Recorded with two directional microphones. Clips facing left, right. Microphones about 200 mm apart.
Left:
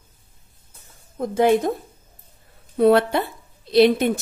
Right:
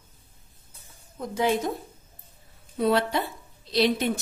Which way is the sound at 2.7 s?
60° left (ahead or behind).